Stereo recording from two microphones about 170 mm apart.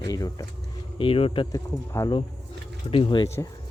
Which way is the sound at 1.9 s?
15° left (ahead or behind).